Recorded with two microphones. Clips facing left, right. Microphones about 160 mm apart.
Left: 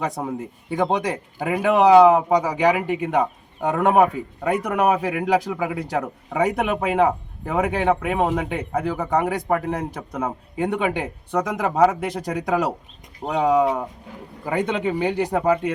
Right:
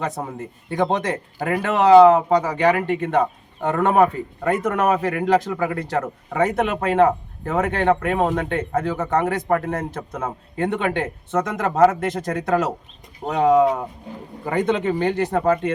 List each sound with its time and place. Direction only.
0.2 s speech: centre (ahead or behind)